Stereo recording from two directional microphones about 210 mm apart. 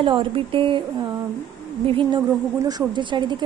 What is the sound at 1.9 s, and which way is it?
Speech, 20° right (ahead or behind).